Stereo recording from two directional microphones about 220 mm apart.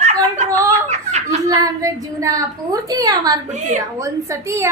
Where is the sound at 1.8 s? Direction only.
15° right (ahead or behind).